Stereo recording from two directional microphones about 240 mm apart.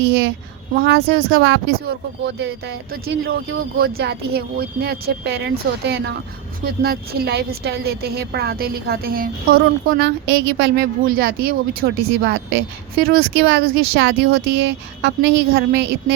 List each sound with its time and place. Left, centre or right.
0.8 s a woman's voice: right